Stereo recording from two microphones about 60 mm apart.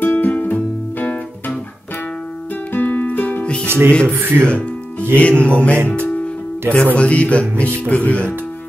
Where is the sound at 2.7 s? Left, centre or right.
Left.